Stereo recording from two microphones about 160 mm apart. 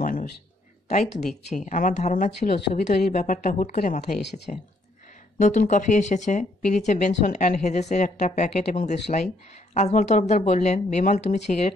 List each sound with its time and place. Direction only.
0.0 s a sound: 60° left (ahead or behind)
1.2 s speech: 45° left (ahead or behind)
4.2 s speech: 90° left
5.4 s speech: 50° left (ahead or behind)